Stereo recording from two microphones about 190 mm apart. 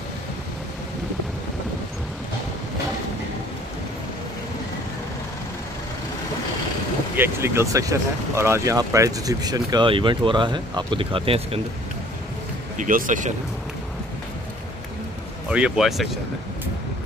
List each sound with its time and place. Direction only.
7.2 s speech: 15° right (ahead or behind); by 11.6 s 30° right (ahead or behind)
12.7 s speech: 45° right (ahead or behind)
15.5 s speech: 5° right (ahead or behind)